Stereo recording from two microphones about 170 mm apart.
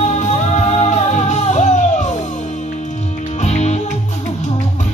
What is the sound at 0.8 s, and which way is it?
Music, 40° left (ahead or behind).